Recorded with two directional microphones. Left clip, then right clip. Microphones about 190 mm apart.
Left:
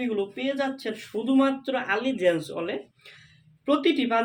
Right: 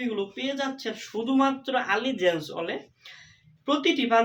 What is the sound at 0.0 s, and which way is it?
Speech, 15° right (ahead or behind).